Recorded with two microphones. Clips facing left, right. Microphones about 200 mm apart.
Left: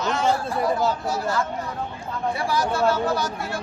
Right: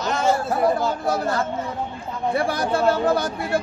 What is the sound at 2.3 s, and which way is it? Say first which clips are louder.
Speech: right 2 dB; 55° right (ahead or behind).